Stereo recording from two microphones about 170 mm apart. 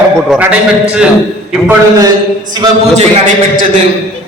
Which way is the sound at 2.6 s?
25° right (ahead or behind).